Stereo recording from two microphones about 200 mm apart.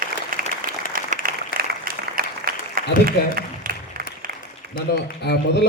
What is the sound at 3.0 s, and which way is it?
Speech, 45° right (ahead or behind).